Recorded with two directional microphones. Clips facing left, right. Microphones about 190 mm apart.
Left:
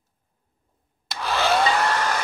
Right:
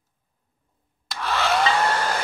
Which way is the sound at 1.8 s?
30° right (ahead or behind).